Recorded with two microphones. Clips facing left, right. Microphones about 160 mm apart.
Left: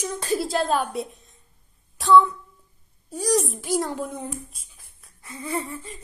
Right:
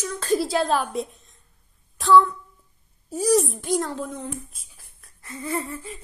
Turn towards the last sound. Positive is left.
turn(degrees=-5)  # may be behind; listen again after turning